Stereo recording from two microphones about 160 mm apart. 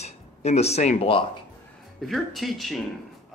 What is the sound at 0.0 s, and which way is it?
Speech, 40° left (ahead or behind).